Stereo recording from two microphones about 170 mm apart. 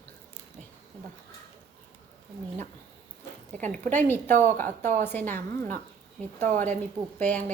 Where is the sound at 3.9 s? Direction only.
10° left (ahead or behind).